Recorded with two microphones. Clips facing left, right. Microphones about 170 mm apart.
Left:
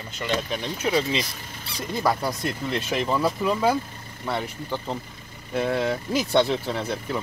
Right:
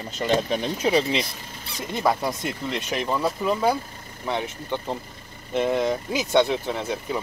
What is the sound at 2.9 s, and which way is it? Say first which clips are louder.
Speech: left 1 dB; centre (ahead or behind).